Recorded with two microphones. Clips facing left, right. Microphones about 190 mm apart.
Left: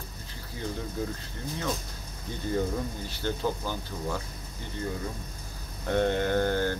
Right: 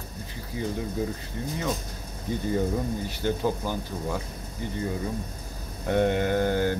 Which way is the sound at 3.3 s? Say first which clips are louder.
Right 3 dB; 15° right (ahead or behind).